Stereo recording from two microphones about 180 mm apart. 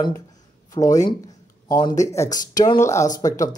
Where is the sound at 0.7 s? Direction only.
20° left (ahead or behind).